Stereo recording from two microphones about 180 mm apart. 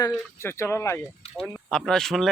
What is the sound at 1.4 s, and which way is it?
Speech, centre (ahead or behind).